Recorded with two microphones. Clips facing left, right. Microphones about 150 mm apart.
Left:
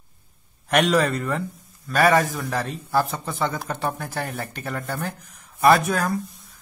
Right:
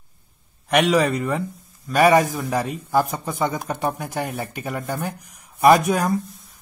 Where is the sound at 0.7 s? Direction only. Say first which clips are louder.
Right 2 dB; 10° right (ahead or behind).